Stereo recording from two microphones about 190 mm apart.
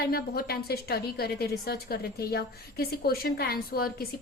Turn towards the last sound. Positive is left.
turn(degrees=55)  # may be behind; listen again after turning